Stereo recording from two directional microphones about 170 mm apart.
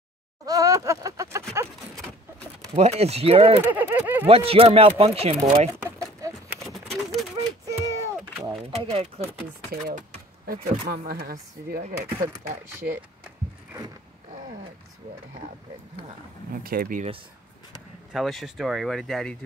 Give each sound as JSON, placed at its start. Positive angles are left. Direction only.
{"t": 0.5, "sound": "a sound", "side_deg": -20}
{"t": 2.7, "sound": "speech", "side_deg": -40}
{"t": 3.6, "sound": "speech", "side_deg": -10}
{"t": 4.3, "sound": "speech", "side_deg": -35}
{"t": 5.9, "sound": "a sound", "side_deg": -15}
{"t": 6.6, "sound": "a sound", "side_deg": 0}
{"t": 7.3, "sound": "a sound", "side_deg": -20}
{"t": 8.7, "sound": "speech", "side_deg": -35}
{"t": 9.7, "sound": "speech", "side_deg": -55}
{"t": 12.8, "sound": "speech", "side_deg": -65}
{"t": 16.6, "sound": "speech", "side_deg": -60}
{"t": 18.1, "sound": "speech", "side_deg": 0}